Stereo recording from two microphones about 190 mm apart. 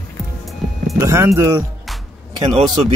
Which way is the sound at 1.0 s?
15° right (ahead or behind).